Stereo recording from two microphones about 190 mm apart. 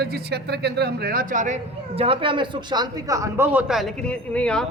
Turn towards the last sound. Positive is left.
turn(degrees=5)  # may be behind; listen again after turning